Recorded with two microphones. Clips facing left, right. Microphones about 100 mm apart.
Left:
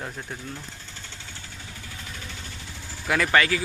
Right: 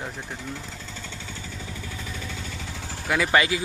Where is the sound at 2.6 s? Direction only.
90° right.